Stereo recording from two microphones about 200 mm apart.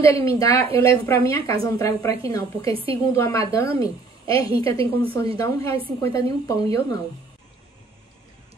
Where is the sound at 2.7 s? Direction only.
25° right (ahead or behind).